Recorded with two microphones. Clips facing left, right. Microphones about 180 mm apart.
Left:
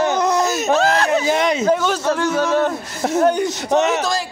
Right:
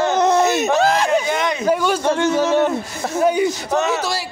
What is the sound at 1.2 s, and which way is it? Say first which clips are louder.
Speech: left 3 dB; 25° left (ahead or behind).